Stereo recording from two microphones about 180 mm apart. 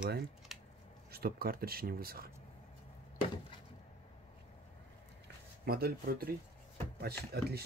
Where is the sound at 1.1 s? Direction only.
55° right (ahead or behind).